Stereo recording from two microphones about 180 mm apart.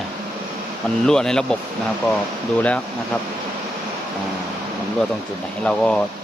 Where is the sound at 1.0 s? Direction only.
5° left (ahead or behind).